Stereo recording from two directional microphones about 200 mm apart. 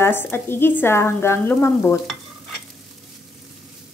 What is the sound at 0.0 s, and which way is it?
Speech, 10° left (ahead or behind).